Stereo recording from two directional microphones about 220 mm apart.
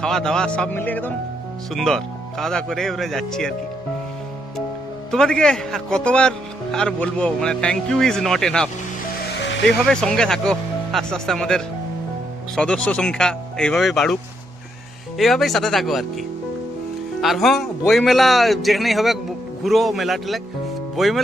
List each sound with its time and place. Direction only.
0.0 s speech: 5° left (ahead or behind)
5.1 s speech: 5° left (ahead or behind)
9.3 s music: 55° left (ahead or behind)
9.7 s speech: 5° left (ahead or behind)
15.1 s speech: centre (ahead or behind)
17.2 s speech: centre (ahead or behind)